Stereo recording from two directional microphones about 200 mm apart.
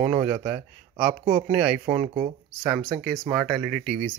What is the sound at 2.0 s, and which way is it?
Speech, 35° right (ahead or behind).